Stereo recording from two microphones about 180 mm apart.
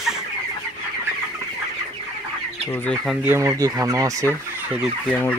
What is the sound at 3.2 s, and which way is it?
Fowl, 15° right (ahead or behind).